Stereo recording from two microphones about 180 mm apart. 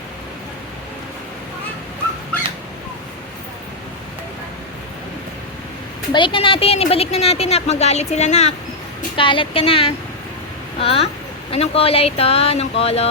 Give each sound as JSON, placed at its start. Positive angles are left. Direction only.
{"t": 6.1, "sound": "a woman's voice", "side_deg": 30}
{"t": 9.1, "sound": "a woman's voice", "side_deg": 30}